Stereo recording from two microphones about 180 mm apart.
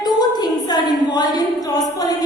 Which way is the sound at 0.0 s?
20° left (ahead or behind).